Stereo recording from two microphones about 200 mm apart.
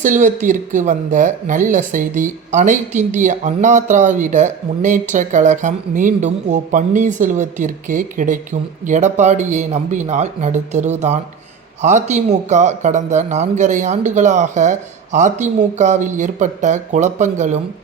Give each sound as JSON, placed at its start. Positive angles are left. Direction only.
{"t": 0.0, "sound": "speech", "side_deg": -40}